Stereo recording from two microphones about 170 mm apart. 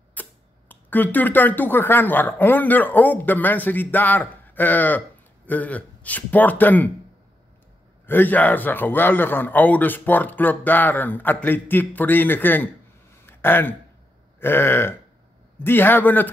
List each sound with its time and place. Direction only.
0.1 s a man's voice: 10° left (ahead or behind)
8.1 s a man's voice: 10° left (ahead or behind)
13.2 s a sound: 15° left (ahead or behind)
14.4 s a man's voice: 15° left (ahead or behind)